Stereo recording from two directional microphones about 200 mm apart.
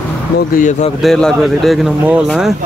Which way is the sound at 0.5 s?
40° left (ahead or behind).